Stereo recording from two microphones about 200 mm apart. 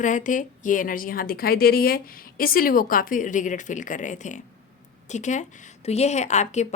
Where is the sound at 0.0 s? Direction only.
40° left (ahead or behind).